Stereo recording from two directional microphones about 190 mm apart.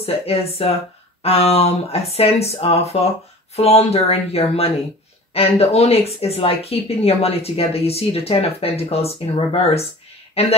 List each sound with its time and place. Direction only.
0.0 s speech: 30° left (ahead or behind)